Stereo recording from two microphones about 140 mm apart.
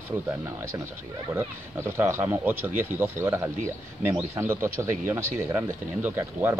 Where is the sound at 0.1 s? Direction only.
20° right (ahead or behind).